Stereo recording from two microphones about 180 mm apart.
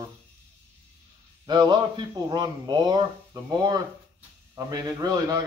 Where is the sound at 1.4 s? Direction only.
25° right (ahead or behind).